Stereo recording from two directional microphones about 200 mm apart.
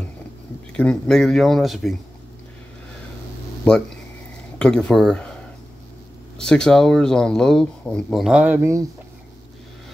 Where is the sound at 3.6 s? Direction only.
5° left (ahead or behind).